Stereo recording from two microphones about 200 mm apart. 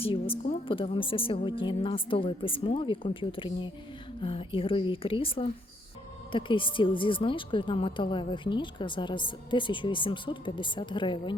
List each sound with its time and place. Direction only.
0.0 s speech: 30° left (ahead or behind)